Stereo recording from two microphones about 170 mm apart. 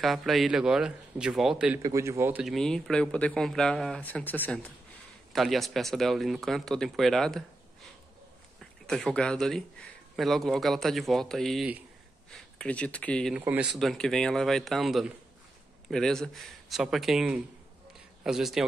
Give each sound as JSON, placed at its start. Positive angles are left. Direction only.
{"t": 0.0, "sound": "a man's voice", "side_deg": 0}
{"t": 1.8, "sound": "a man's voice", "side_deg": -20}
{"t": 2.4, "sound": "a man's voice", "side_deg": 0}
{"t": 5.3, "sound": "a man's voice", "side_deg": 0}
{"t": 13.3, "sound": "a man's voice", "side_deg": -10}